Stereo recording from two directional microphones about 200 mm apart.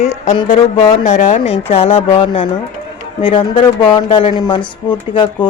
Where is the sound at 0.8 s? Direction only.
15° left (ahead or behind).